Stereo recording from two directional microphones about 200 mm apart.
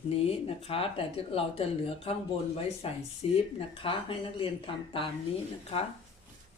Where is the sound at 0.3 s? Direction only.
30° left (ahead or behind).